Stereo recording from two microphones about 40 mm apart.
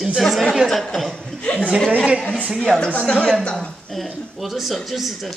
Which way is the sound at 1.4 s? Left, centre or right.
Left.